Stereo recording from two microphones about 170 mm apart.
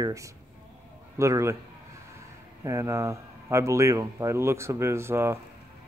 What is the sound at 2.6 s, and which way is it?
Speech, 15° right (ahead or behind).